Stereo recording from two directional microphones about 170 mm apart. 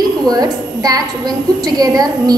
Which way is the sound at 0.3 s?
20° right (ahead or behind).